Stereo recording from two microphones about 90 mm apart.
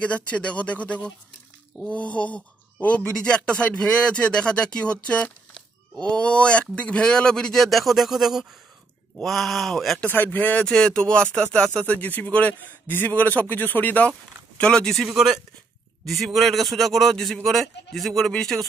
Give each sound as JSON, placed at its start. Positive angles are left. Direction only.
{"t": 0.0, "sound": "speech", "side_deg": 15}
{"t": 9.9, "sound": "speech", "side_deg": 20}
{"t": 15.0, "sound": "speech", "side_deg": -5}